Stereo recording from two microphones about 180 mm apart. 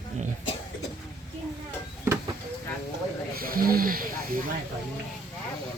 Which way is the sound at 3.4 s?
55° right (ahead or behind).